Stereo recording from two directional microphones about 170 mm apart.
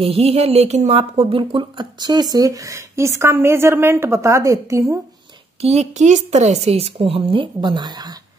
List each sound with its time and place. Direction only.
0.0 s speech: 35° right (ahead or behind); by 5.0 s 20° right (ahead or behind)
5.6 s a woman's voice: 40° right (ahead or behind)